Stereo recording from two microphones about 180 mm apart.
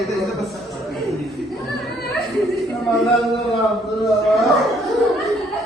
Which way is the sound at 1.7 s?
Centre (ahead or behind).